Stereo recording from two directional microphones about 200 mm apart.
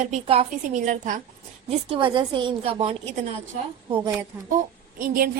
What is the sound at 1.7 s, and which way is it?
A woman's voice, 25° right (ahead or behind).